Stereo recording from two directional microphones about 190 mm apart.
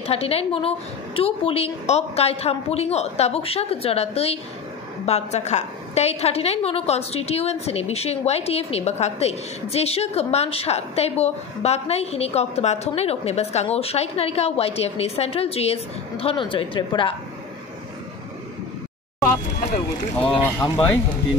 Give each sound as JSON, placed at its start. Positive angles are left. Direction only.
{"t": 0.0, "sound": "a woman's voice", "side_deg": 30}
{"t": 20.6, "sound": "speech", "side_deg": 20}